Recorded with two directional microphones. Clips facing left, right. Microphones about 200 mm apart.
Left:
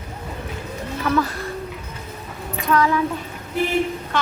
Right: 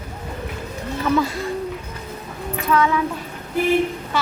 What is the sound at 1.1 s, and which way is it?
Speech, 15° right (ahead or behind).